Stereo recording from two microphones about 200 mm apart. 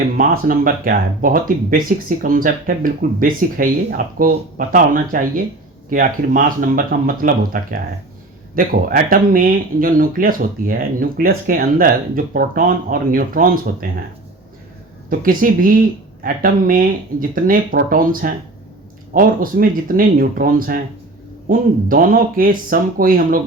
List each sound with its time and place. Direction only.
0.2 s speech: 45° right (ahead or behind)
15.1 s speech: 45° right (ahead or behind)